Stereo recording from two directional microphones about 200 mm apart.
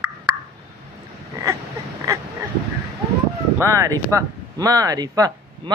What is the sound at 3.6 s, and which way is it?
Speech, 15° right (ahead or behind).